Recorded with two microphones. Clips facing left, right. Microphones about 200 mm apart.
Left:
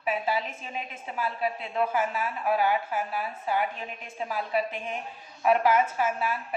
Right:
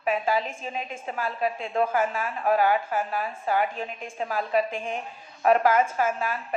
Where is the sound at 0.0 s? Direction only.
45° right (ahead or behind).